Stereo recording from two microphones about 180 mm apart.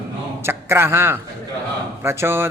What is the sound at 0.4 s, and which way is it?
Speech, 15° right (ahead or behind).